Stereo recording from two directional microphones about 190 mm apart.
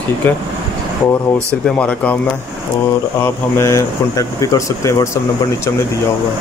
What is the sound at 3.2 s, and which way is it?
Speech, 15° left (ahead or behind).